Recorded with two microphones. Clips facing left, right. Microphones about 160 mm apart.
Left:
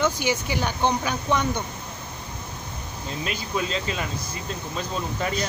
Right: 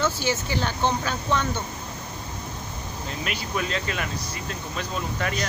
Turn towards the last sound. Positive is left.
turn(degrees=20)  # may be behind; listen again after turning